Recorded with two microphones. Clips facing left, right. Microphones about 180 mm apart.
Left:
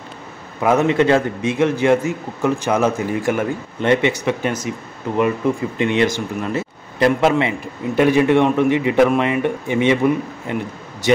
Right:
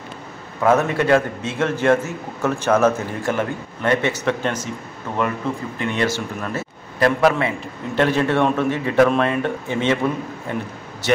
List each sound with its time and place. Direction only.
0.6 s a man's voice: 20° left (ahead or behind)